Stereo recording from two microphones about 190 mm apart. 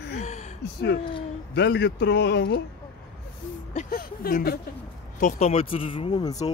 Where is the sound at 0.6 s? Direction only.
60° left (ahead or behind).